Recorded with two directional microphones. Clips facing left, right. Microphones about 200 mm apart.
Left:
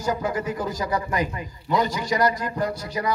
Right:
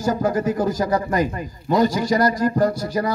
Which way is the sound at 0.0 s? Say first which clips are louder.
Right 5 dB; 45° right (ahead or behind).